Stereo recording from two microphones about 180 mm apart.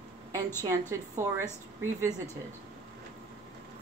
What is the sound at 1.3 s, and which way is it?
Speech, 15° right (ahead or behind).